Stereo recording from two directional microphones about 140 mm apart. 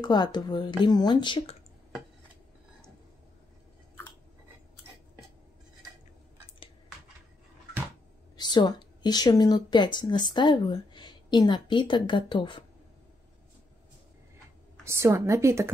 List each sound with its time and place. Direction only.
0.0 s a woman's voice: 30° left (ahead or behind)
8.4 s a woman's voice: 30° left (ahead or behind)
14.9 s a woman's voice: 20° right (ahead or behind)